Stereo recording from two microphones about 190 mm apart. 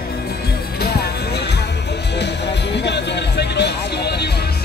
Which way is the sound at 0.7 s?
55° left (ahead or behind).